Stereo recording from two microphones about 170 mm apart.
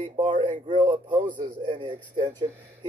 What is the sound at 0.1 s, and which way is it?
Speech, 30° right (ahead or behind).